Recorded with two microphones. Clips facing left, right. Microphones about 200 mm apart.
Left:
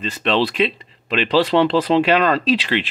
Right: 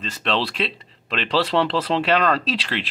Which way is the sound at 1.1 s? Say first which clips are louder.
Left 5 dB; 5° left (ahead or behind).